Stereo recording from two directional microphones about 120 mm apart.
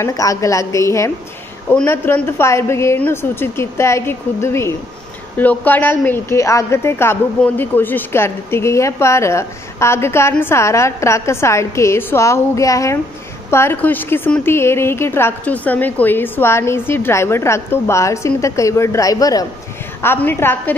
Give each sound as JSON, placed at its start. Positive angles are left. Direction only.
{"t": 0.0, "sound": "a woman's voice", "side_deg": 25}
{"t": 20.0, "sound": "speech", "side_deg": 20}